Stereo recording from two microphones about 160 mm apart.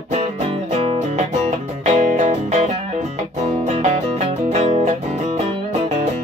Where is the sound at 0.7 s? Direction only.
40° right (ahead or behind).